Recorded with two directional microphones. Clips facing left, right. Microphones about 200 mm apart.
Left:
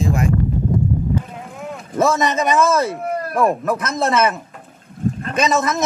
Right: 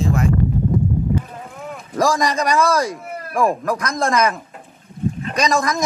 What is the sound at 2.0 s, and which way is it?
Speech, 5° left (ahead or behind).